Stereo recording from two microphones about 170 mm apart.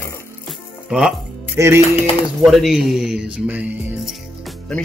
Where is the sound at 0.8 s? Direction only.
5° right (ahead or behind).